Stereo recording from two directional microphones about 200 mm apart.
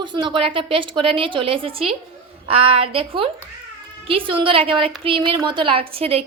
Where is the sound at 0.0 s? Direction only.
25° right (ahead or behind).